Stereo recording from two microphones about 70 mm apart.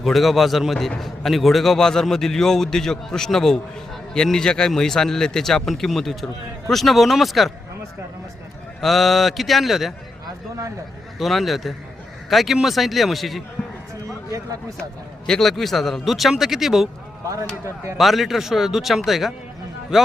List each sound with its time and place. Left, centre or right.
0.0 s a man's voice: centre
8.8 s a man's voice: centre
11.2 s a man's voice: centre
14.1 s a sound: right
15.3 s a man's voice: centre
17.9 s a man's voice: centre